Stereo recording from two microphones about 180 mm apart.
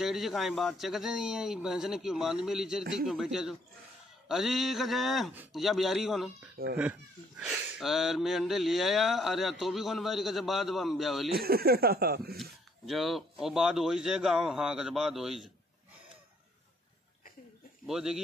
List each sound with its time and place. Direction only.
0.0 s speech: centre (ahead or behind)
11.3 s speech: 60° right (ahead or behind)
12.8 s speech: centre (ahead or behind)
17.8 s speech: 5° right (ahead or behind)